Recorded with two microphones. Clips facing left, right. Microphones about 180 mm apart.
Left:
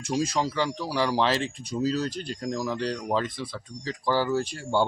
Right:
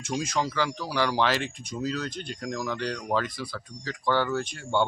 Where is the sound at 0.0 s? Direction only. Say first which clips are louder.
Left 2 dB; 30° left (ahead or behind).